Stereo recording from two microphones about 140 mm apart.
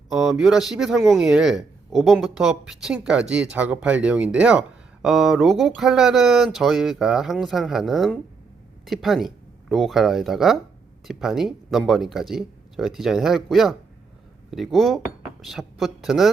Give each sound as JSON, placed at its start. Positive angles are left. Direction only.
{"t": 0.1, "sound": "speech", "side_deg": -5}